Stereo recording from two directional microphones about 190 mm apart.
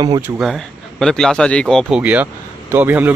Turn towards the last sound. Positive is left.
turn(degrees=-10)  # may be behind; listen again after turning